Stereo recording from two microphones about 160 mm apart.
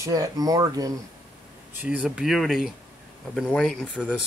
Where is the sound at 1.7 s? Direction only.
10° right (ahead or behind).